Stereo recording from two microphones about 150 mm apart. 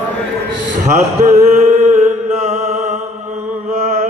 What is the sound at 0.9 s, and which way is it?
Mantra, 50° right (ahead or behind).